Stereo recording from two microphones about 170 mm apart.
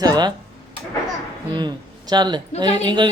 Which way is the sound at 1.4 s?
25° right (ahead or behind).